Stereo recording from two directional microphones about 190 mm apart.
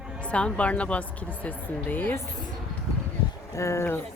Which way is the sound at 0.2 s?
5° left (ahead or behind).